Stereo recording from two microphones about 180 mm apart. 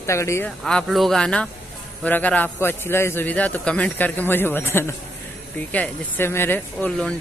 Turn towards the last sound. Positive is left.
turn(degrees=10)  # may be behind; listen again after turning